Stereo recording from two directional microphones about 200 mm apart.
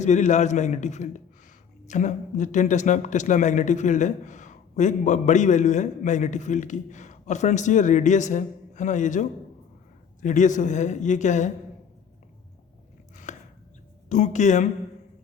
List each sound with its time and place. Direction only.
0.0 s a man's voice: 35° left (ahead or behind)
13.3 s chopping: 40° left (ahead or behind)
14.1 s a man's voice: 35° left (ahead or behind)